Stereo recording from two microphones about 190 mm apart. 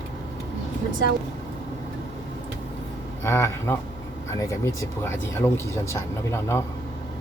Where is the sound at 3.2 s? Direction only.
15° left (ahead or behind).